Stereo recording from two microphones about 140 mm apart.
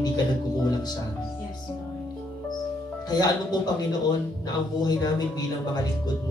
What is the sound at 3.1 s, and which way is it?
Speech, 30° left (ahead or behind).